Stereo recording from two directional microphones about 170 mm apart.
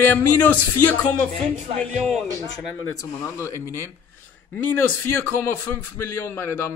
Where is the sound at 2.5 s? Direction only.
15° left (ahead or behind).